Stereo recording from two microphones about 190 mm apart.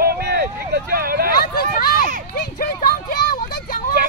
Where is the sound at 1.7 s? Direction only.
50° left (ahead or behind).